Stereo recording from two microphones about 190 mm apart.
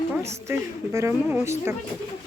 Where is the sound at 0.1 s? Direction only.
15° right (ahead or behind).